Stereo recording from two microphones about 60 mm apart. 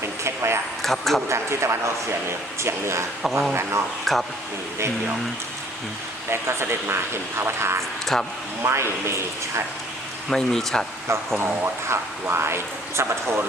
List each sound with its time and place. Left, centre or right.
0.3 s a sound: right
0.8 s speech: centre
1.3 s speech: right
3.2 s speech: centre
6.3 s speech: right
8.1 s speech: centre
8.6 s speech: right
10.2 s speech: centre
11.3 s speech: right